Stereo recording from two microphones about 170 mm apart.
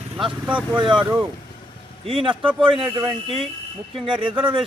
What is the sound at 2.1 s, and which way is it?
Speech, 30° right (ahead or behind).